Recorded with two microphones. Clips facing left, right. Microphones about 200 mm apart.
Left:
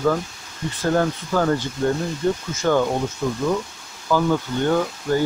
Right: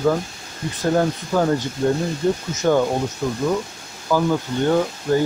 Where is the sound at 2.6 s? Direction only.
15° right (ahead or behind).